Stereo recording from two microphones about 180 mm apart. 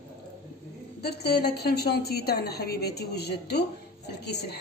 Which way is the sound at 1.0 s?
65° left (ahead or behind).